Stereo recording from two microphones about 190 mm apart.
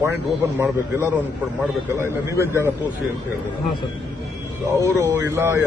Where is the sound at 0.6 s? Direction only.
15° right (ahead or behind).